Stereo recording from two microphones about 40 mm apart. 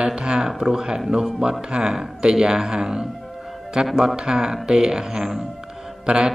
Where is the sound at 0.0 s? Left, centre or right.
Right.